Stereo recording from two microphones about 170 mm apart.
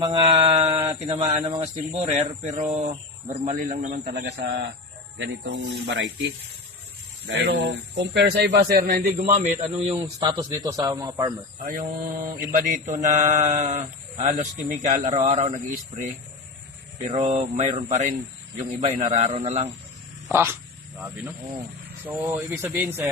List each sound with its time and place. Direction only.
0.0 s mantra: 30° right (ahead or behind)
1.1 s speech: 30° right (ahead or behind)
3.6 s mantra: 45° right (ahead or behind)
5.1 s speech: 85° right
7.3 s speech: 85° right; by 9.0 s 65° right (ahead or behind)
9.1 s mantra: 45° right (ahead or behind)
10.0 s speech: 20° right (ahead or behind)
11.6 s mantra: 50° right (ahead or behind)
17.0 s mantra: 40° right (ahead or behind)
18.5 s speech: 40° right (ahead or behind)
20.3 s speech: 15° right (ahead or behind)
22.0 s speech: 10° right (ahead or behind)